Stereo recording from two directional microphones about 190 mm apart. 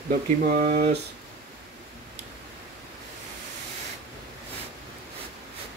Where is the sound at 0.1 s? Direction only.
50° right (ahead or behind).